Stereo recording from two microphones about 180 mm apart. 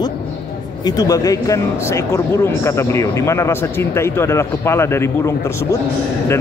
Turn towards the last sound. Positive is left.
turn(degrees=15)  # may be behind; listen again after turning